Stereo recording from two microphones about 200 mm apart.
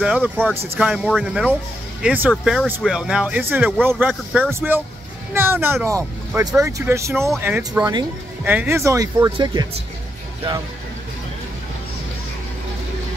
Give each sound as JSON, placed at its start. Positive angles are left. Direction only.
{"t": 0.0, "sound": "speech", "side_deg": -5}